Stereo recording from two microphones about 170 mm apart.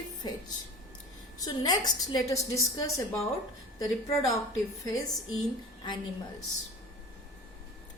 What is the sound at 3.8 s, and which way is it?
Speech, 20° left (ahead or behind).